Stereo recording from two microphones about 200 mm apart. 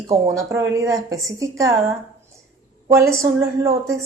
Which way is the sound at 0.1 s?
15° right (ahead or behind).